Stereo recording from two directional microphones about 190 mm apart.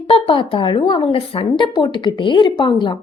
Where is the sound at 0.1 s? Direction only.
30° left (ahead or behind).